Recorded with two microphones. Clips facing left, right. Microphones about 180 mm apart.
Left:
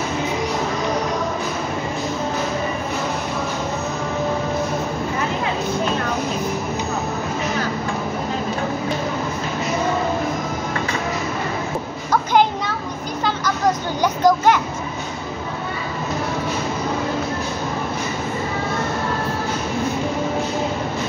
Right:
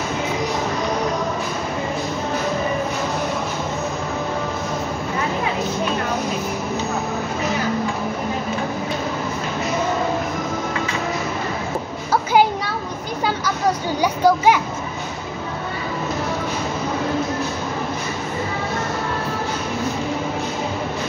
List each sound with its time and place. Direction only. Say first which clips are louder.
13.2 s children playing: left 1 dB; 10° right (ahead or behind)